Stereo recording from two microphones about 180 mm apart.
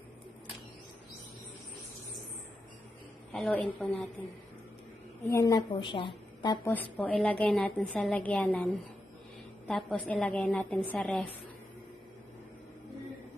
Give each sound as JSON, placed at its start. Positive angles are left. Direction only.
{"t": 3.3, "sound": "a woman's voice", "side_deg": 5}
{"t": 5.2, "sound": "a woman's voice", "side_deg": 15}
{"t": 9.7, "sound": "a woman's voice", "side_deg": 0}